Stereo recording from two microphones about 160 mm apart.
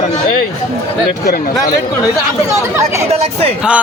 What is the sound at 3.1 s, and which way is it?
Speech, 40° right (ahead or behind).